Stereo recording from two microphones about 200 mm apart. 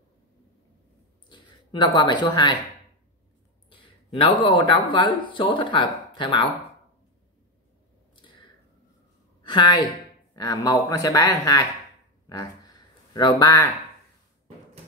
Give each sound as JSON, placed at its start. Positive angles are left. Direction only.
{"t": 1.3, "sound": "speech", "side_deg": 20}
{"t": 3.8, "sound": "speech", "side_deg": 25}
{"t": 9.4, "sound": "a woman's voice", "side_deg": 25}
{"t": 12.3, "sound": "a sound", "side_deg": 20}